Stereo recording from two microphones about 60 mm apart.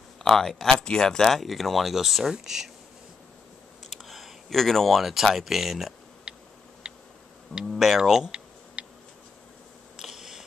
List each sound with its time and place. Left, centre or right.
0.2 s speech: centre
3.9 s speech: centre
6.3 s tick-tock: centre
6.8 s insect: centre
7.5 s speech: centre
8.8 s tick-tock: centre
9.9 s a sound: centre